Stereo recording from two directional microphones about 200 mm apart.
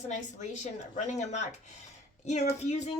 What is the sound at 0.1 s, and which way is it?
Speech, 35° left (ahead or behind).